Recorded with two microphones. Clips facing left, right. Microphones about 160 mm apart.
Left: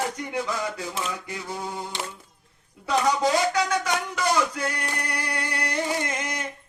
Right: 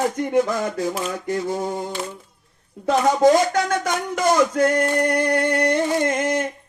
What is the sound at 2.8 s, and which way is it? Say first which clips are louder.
Speech: right 7 dB; 45° right (ahead or behind).